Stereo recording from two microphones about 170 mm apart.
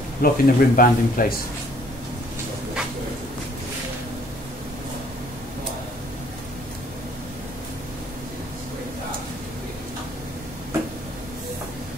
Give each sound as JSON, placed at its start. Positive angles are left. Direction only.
{"t": 0.2, "sound": "speech", "side_deg": 55}